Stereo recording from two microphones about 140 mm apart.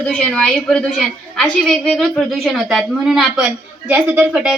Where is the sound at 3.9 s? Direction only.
15° right (ahead or behind).